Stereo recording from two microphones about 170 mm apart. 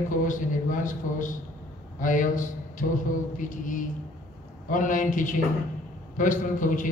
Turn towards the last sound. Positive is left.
turn(degrees=50)  # may be behind; listen again after turning